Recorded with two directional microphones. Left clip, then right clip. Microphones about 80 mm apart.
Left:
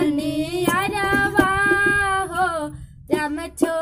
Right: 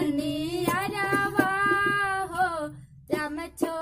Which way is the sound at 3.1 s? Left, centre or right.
Centre.